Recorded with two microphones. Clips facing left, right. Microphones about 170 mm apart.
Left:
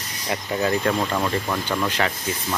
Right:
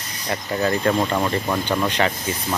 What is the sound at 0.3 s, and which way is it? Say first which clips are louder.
Speech: right 1 dB; 5° left (ahead or behind).